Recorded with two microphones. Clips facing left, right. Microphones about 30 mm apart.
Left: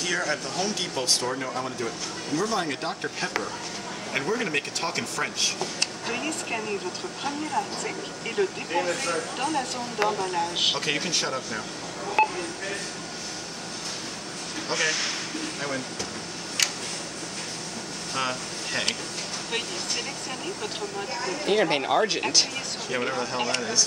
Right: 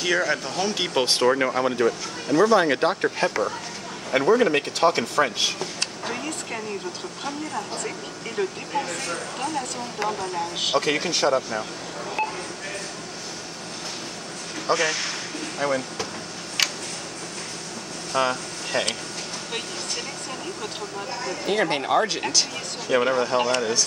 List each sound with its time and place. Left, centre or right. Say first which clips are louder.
0.0 s speech: right 4 dB; centre
0.9 s speech: right 10 dB; right
1.8 s speech: right 13 dB; right
2.3 s speech: right 9 dB; right
4.3 s speech: right 9 dB; centre
5.6 s a sound: even; centre
6.1 s speech: left 1 dB; centre
10.8 s speech: right 4 dB; centre
12.2 s telephone dialing: left 5 dB; left
14.7 s speech: right 3 dB; centre
15.6 s speech: right 10 dB; centre
18.1 s speech: right 6 dB; centre
20.6 s speech: even; centre
22.8 s speech: right 8 dB; centre